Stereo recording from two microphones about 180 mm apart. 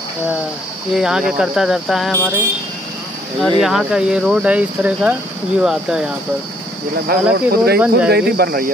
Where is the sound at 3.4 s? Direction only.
Centre (ahead or behind).